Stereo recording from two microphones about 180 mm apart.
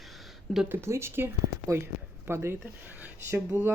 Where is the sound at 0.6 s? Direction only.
15° right (ahead or behind).